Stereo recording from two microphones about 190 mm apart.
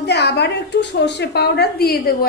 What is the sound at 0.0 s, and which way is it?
A woman's voice, 60° left (ahead or behind).